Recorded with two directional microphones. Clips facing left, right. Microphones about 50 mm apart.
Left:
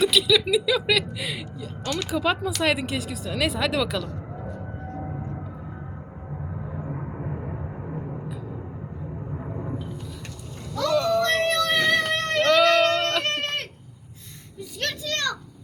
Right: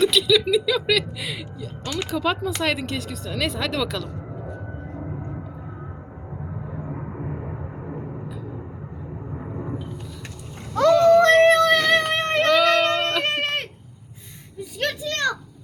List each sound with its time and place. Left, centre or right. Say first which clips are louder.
0.0 s speech: right 2 dB; centre
1.8 s speech: even; centre
2.0 s speech: right 1 dB; centre
6.7 s vehicle: even; centre
9.1 s a sound: right 2 dB; centre
11.0 s a sound: right 9 dB; right
12.5 s child singing: even; centre
12.8 s goat: even; centre
14.6 s children playing: right 4 dB; centre